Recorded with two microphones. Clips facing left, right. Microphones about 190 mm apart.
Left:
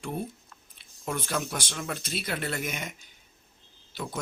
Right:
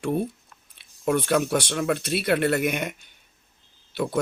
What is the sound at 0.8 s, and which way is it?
Speech, 65° right (ahead or behind).